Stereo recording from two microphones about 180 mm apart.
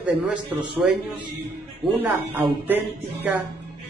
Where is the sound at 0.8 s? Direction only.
5° right (ahead or behind).